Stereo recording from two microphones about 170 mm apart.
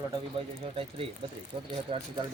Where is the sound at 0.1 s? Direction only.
30° right (ahead or behind).